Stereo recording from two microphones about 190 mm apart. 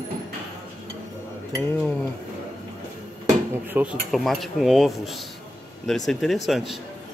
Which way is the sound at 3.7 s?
Centre (ahead or behind).